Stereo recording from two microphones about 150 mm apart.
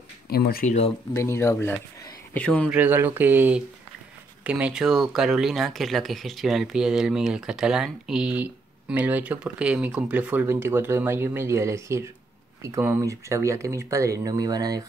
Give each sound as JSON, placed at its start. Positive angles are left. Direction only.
{"t": 0.3, "sound": "speech", "side_deg": 90}
{"t": 0.7, "sound": "speech", "side_deg": 45}
{"t": 1.1, "sound": "speech", "side_deg": 20}
{"t": 2.7, "sound": "speech", "side_deg": -15}